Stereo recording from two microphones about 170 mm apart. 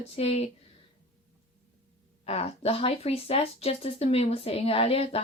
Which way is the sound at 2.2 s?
35° left (ahead or behind).